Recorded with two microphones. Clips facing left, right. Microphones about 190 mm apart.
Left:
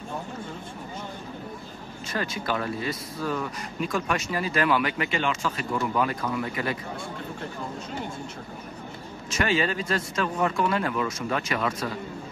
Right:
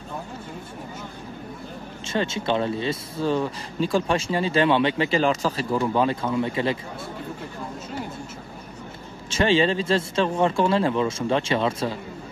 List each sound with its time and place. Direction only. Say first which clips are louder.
2.0 s speech: right 5 dB; 25° right (ahead or behind)
9.3 s speech: right 5 dB; 30° right (ahead or behind)